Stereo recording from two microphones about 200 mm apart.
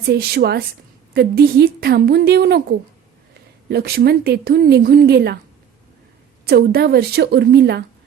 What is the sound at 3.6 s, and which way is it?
A woman's voice, 50° right (ahead or behind).